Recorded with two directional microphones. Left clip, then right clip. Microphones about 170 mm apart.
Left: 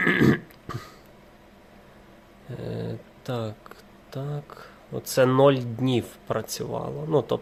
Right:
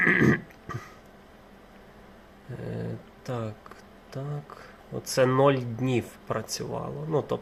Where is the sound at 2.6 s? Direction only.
25° left (ahead or behind).